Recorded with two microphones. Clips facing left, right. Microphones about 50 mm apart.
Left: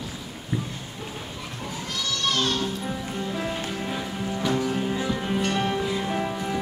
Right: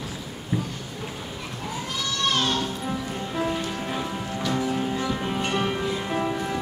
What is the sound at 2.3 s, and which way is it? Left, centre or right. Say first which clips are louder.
Music: right 1 dB; centre.